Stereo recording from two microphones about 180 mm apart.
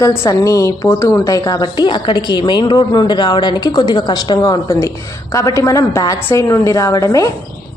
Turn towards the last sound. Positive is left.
turn(degrees=20)  # may be behind; listen again after turning